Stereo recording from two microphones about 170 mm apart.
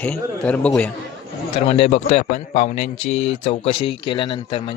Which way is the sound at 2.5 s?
50° left (ahead or behind).